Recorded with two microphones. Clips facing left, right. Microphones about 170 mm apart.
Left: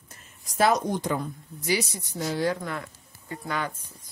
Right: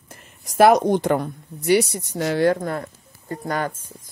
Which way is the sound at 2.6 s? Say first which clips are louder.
Right 7 dB; 45° right (ahead or behind).